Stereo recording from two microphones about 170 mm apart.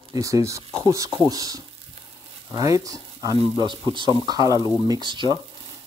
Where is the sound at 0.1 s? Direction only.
20° right (ahead or behind).